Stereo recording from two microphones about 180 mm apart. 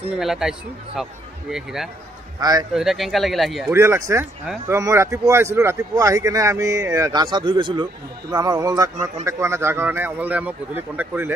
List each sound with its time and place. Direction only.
0.2 s speech: centre (ahead or behind)
3.7 s a man's voice: 15° right (ahead or behind)